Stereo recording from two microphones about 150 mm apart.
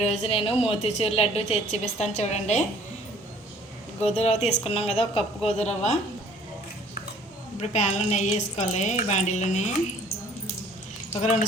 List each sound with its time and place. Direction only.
0.0 s a woman's voice: 45° left (ahead or behind)
4.0 s a woman's voice: 45° left (ahead or behind)
7.6 s a woman's voice: 50° left (ahead or behind)